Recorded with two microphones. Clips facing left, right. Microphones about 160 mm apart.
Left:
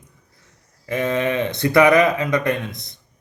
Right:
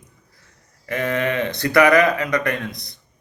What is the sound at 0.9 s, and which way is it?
A man's voice, 20° left (ahead or behind).